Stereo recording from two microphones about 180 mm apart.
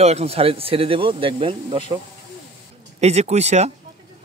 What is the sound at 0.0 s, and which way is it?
Speech, 35° right (ahead or behind).